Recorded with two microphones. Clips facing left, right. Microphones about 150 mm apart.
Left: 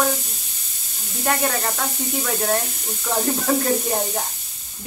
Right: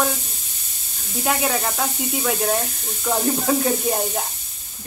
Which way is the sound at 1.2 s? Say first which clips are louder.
Even; 5° right (ahead or behind).